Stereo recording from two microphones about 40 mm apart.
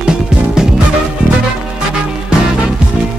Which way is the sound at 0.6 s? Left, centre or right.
Centre.